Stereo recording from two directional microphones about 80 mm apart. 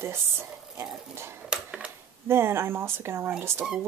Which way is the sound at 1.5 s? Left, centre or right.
Centre.